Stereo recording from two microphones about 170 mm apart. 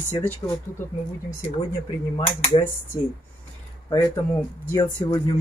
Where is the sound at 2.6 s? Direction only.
30° left (ahead or behind).